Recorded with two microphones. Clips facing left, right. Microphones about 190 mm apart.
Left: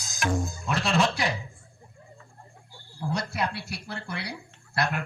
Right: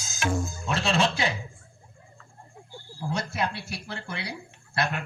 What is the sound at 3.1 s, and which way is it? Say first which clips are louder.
Speech: even; 25° right (ahead or behind).